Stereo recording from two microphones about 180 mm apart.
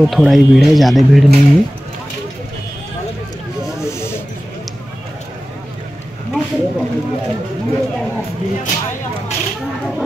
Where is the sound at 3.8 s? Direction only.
15° left (ahead or behind).